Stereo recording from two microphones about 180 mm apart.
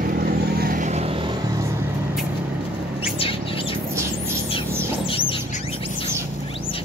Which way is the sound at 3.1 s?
30° left (ahead or behind).